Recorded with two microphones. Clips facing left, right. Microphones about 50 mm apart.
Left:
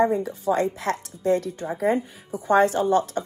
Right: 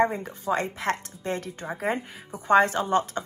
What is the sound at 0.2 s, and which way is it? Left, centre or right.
Speech, right.